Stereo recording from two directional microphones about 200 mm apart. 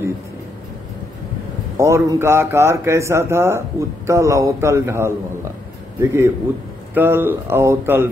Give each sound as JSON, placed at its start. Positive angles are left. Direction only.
{"t": 1.8, "sound": "a man's voice", "side_deg": -15}